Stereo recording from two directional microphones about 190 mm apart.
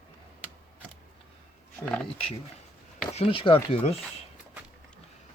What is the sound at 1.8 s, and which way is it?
Speech, 5° left (ahead or behind).